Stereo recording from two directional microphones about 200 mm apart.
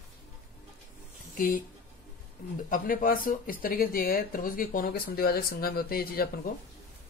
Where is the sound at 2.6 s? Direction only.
45° left (ahead or behind).